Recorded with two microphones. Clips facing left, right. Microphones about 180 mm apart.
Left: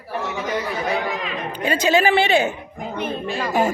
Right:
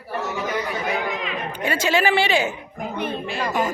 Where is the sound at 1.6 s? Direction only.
20° left (ahead or behind).